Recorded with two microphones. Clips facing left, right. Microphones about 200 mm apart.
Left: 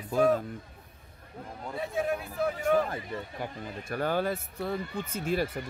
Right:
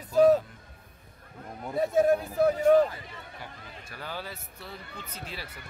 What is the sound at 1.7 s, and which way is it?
Speech, 45° right (ahead or behind).